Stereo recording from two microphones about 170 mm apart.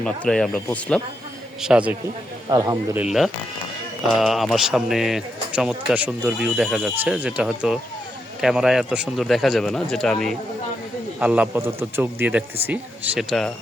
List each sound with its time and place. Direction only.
0.0 s speech: 5° left (ahead or behind)
1.6 s speech: 5° right (ahead or behind)
2.5 s speech: 20° right (ahead or behind)
3.0 s speech: centre (ahead or behind)
11.2 s speech: 10° right (ahead or behind)